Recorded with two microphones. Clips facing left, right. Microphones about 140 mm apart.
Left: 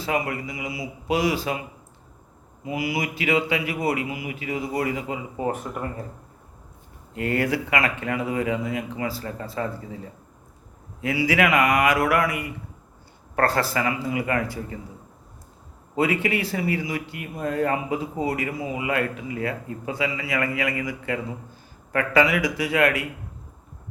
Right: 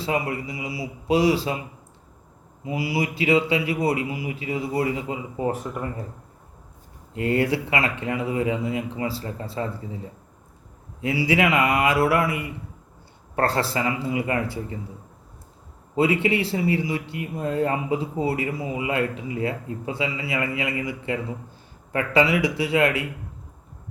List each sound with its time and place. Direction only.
0.0 s speech: 30° right (ahead or behind)
2.6 s speech: 30° right (ahead or behind)
7.1 s speech: 25° right (ahead or behind)
11.0 s speech: 25° right (ahead or behind)
16.0 s speech: 25° right (ahead or behind)